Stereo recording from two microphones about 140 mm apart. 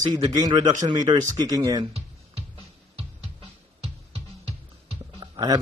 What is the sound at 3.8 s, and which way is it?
Music, 45° right (ahead or behind).